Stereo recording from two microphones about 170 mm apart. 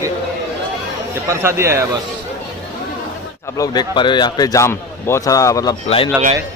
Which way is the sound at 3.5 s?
20° left (ahead or behind).